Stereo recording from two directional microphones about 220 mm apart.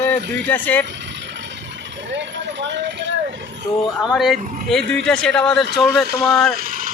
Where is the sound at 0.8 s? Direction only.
55° right (ahead or behind).